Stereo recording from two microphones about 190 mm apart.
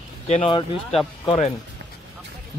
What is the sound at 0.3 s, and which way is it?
Speech, 25° left (ahead or behind).